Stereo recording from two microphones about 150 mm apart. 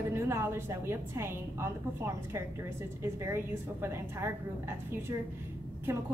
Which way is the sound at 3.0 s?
15° right (ahead or behind).